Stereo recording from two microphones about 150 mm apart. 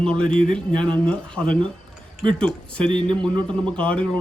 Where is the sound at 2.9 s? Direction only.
30° right (ahead or behind).